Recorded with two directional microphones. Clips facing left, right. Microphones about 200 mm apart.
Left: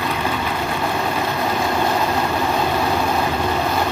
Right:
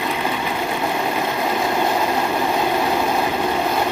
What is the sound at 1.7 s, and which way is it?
Vehicle, 10° right (ahead or behind).